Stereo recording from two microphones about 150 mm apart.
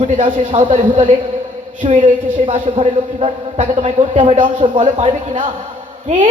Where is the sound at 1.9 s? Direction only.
60° right (ahead or behind).